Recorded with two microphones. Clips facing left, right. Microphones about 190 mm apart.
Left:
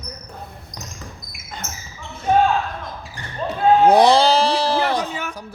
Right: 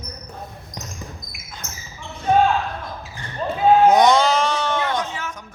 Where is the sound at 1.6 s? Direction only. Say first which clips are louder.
Left 2 dB; 15° right (ahead or behind).